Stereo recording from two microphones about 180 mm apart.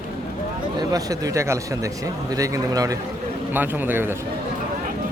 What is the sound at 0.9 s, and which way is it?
Speech, 20° right (ahead or behind).